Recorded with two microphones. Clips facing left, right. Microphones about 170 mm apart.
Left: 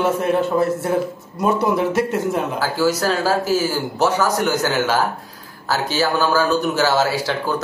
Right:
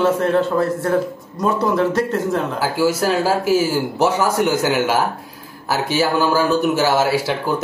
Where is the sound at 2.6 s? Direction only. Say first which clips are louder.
Right 1 dB; 20° right (ahead or behind).